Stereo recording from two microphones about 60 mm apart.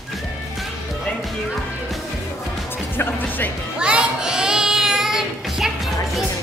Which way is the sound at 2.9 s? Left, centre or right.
Left.